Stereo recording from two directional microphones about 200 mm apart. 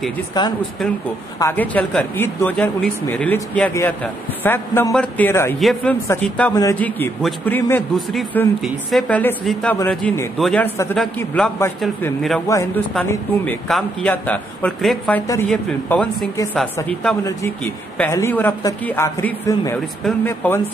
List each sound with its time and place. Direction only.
0.3 s speech: 20° left (ahead or behind)
1.4 s a man's voice: 10° left (ahead or behind)
5.6 s a woman's voice: centre (ahead or behind)
12.4 s a man's voice: 15° left (ahead or behind)
13.7 s a man's voice: 5° left (ahead or behind)
17.9 s a man's voice: 10° left (ahead or behind)